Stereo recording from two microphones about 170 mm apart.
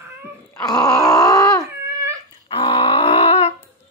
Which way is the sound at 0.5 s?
20° left (ahead or behind).